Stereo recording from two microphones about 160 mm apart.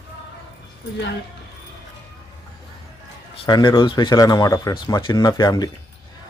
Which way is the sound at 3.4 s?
30° left (ahead or behind).